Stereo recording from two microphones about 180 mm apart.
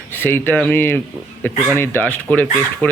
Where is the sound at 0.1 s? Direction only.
10° left (ahead or behind).